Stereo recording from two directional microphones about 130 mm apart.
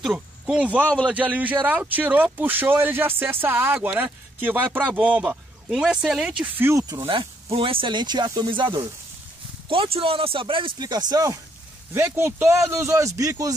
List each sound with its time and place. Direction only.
0.0 s speech: 5° right (ahead or behind)
6.5 s a man's voice: 20° right (ahead or behind)
7.1 s a man's voice: 45° right (ahead or behind); by 13.6 s 25° right (ahead or behind)